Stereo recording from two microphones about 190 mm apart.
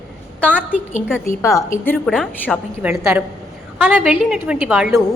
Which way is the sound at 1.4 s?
15° left (ahead or behind).